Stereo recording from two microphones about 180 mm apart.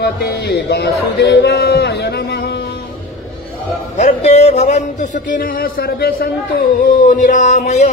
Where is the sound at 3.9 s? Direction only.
40° left (ahead or behind); by 6.2 s 55° left (ahead or behind).